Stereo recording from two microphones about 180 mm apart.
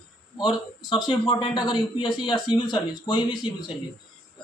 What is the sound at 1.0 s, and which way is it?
Speech, 30° left (ahead or behind).